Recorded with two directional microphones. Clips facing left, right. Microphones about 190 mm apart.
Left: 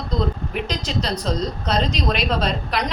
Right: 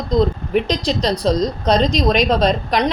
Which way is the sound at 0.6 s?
35° right (ahead or behind).